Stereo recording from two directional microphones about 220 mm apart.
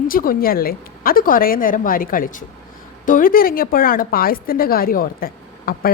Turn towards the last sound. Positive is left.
turn(degrees=40)  # may be behind; listen again after turning